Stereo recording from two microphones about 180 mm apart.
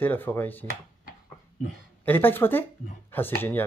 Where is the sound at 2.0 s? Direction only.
10° left (ahead or behind).